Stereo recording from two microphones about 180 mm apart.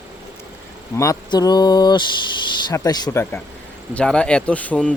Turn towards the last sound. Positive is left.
turn(degrees=5)  # may be behind; listen again after turning